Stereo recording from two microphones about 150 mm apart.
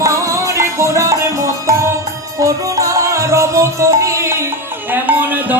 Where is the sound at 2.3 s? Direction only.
20° right (ahead or behind).